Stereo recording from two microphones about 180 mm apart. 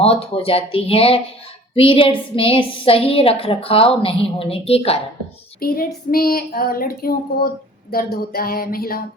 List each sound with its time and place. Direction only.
0.0 s a woman's voice: 35° left (ahead or behind)
5.5 s speech: 55° left (ahead or behind)